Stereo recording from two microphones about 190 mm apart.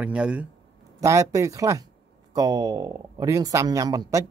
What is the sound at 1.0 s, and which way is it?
Speech, 15° right (ahead or behind).